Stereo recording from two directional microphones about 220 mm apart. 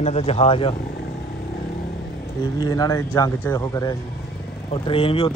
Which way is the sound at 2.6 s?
15° left (ahead or behind).